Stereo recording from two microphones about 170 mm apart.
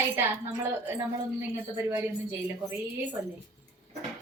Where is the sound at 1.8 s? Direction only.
15° right (ahead or behind).